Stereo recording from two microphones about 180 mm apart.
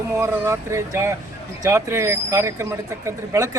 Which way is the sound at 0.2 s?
15° right (ahead or behind).